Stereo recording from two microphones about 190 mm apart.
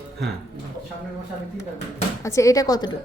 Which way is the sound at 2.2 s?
15° left (ahead or behind).